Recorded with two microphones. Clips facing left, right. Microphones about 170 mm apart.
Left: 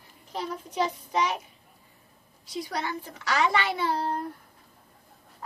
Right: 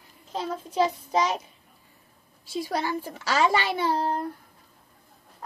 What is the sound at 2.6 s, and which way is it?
A woman's voice, 30° right (ahead or behind).